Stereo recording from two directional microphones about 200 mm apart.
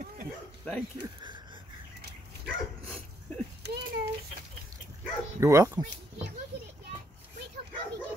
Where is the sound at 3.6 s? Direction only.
55° right (ahead or behind).